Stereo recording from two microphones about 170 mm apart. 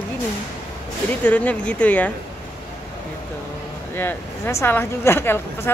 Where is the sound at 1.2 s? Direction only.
10° left (ahead or behind).